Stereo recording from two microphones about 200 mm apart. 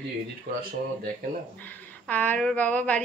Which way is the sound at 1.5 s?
10° left (ahead or behind).